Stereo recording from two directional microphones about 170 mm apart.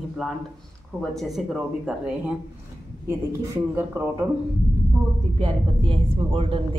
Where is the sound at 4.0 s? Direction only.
15° right (ahead or behind).